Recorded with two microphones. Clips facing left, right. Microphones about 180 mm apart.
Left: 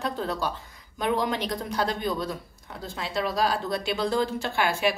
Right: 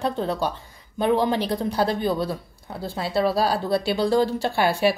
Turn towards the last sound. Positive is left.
turn(degrees=-35)  # may be behind; listen again after turning